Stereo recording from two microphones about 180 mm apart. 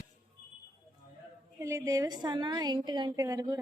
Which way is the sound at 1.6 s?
15° right (ahead or behind).